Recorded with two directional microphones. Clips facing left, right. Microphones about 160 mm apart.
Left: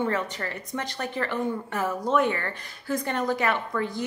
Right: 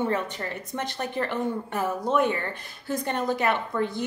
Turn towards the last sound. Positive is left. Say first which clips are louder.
# right 1 dB
turn(degrees=-20)  # may be behind; listen again after turning